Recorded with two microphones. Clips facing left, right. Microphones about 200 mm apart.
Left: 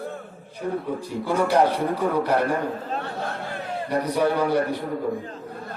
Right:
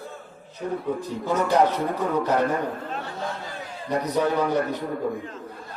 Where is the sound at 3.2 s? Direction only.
60° left (ahead or behind).